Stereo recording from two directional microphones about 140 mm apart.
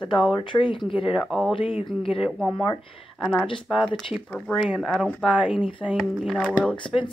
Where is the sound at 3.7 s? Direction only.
Centre (ahead or behind).